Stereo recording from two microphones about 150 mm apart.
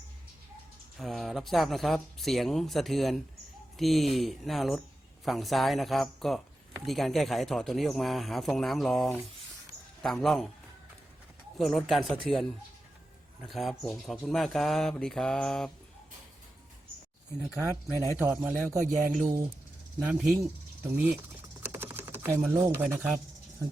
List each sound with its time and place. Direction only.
0.9 s speech: centre (ahead or behind)
11.5 s speech: centre (ahead or behind)
13.5 s speech: centre (ahead or behind)
17.4 s speech: 5° right (ahead or behind)
17.9 s speech: 20° left (ahead or behind)
18.2 s a man's voice: 10° right (ahead or behind)
18.9 s speech: 65° right (ahead or behind)
20.0 s a man's voice: 10° right (ahead or behind)
21.6 s typing: 15° right (ahead or behind)
22.5 s a man's voice: 15° right (ahead or behind)